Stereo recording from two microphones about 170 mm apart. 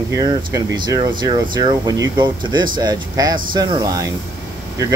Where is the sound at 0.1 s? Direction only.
20° right (ahead or behind).